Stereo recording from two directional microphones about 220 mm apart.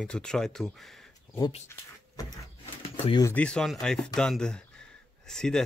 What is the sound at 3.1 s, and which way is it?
Speech, 15° left (ahead or behind).